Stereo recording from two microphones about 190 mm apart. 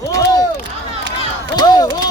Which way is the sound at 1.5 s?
20° left (ahead or behind).